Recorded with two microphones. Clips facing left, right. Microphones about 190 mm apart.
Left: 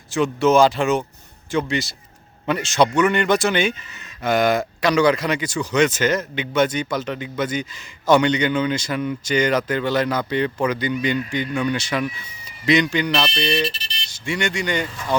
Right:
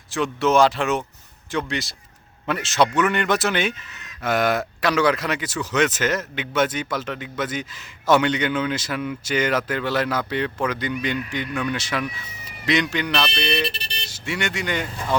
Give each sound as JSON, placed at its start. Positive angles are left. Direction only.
{"t": 0.1, "sound": "speech", "side_deg": 0}
{"t": 13.6, "sound": "vehicle", "side_deg": -60}
{"t": 14.1, "sound": "speech", "side_deg": -5}